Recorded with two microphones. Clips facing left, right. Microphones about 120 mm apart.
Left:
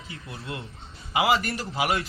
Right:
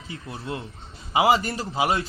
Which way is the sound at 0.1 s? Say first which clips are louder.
Right 4 dB; 30° right (ahead or behind).